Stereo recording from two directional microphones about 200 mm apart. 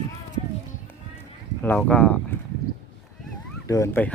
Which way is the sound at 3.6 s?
15° left (ahead or behind).